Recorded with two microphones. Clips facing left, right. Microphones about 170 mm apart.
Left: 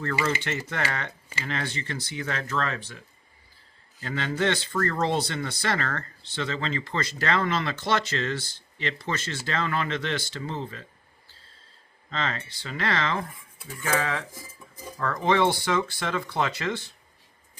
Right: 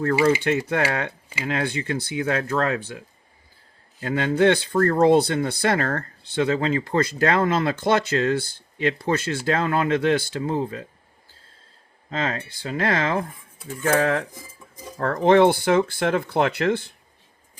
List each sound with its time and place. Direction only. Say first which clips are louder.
0.0 s speech: right 9 dB; 50° right (ahead or behind)
1.5 s speech: right 7 dB; 55° right (ahead or behind)
4.0 s speech: right 8 dB; 50° right (ahead or behind)
12.1 s speech: right 5 dB; 50° right (ahead or behind)
14.3 s dishes: right 2 dB; 20° right (ahead or behind)
14.9 s speech: right 7 dB; 55° right (ahead or behind)